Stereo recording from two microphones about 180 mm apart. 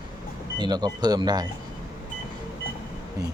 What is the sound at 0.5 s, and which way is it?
Speech, 25° right (ahead or behind).